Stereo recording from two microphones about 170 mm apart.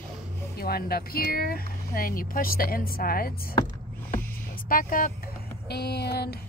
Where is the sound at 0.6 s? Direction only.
65° left (ahead or behind).